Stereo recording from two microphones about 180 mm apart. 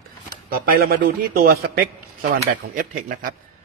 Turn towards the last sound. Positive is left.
turn(degrees=-50)  # may be behind; listen again after turning